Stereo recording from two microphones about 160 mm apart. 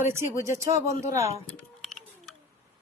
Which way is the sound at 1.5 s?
Centre (ahead or behind).